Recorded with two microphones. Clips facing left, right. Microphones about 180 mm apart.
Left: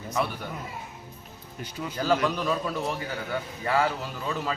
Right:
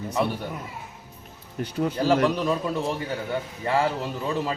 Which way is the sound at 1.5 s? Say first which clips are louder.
Right 9 dB; 55° right (ahead or behind).